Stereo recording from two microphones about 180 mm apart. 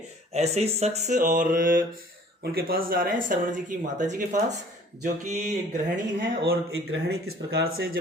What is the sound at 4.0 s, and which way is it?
Speech, 45° right (ahead or behind).